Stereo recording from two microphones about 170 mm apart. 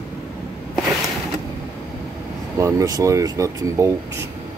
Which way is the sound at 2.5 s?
20° right (ahead or behind).